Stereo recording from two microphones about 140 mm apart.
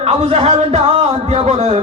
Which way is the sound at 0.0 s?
45° right (ahead or behind).